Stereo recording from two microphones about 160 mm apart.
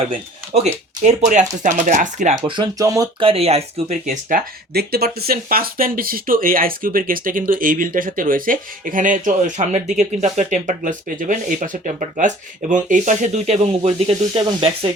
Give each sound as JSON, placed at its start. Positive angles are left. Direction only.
{"t": 1.0, "sound": "speech", "side_deg": -50}
{"t": 2.6, "sound": "speech", "side_deg": -20}
{"t": 3.2, "sound": "speech", "side_deg": -35}